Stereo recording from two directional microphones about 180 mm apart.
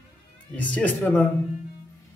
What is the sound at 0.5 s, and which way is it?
Speech, 10° left (ahead or behind).